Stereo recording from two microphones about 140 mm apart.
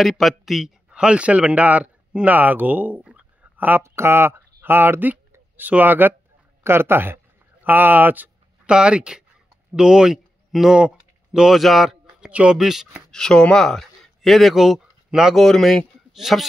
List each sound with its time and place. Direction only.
0.0 s a man's voice: centre (ahead or behind)